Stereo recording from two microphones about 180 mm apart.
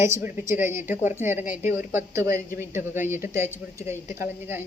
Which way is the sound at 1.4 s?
45° left (ahead or behind).